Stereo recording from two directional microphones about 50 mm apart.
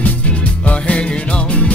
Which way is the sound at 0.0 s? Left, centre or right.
Left.